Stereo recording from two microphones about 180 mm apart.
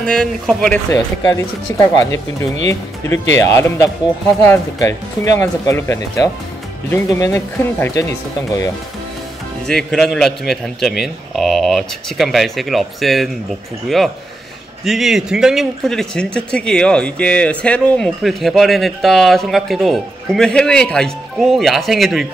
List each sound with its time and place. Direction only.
0.0 s a man's voice: 5° left (ahead or behind)
0.8 s speech: 20° left (ahead or behind)
9.7 s a man's voice: 5° left (ahead or behind)